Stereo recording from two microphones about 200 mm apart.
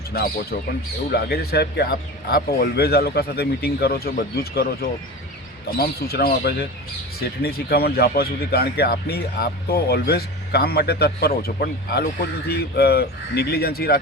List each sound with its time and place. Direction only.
0.1 s speech: 50° left (ahead or behind)